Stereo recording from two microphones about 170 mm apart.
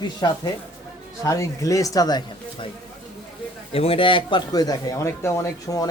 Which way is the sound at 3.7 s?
35° left (ahead or behind).